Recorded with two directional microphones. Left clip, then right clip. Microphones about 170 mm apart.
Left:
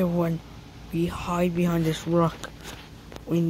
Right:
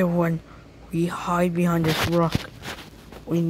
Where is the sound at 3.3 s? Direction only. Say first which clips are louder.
Right 1 dB; 5° left (ahead or behind).